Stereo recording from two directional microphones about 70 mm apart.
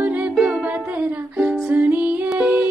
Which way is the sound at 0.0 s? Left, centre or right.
Centre.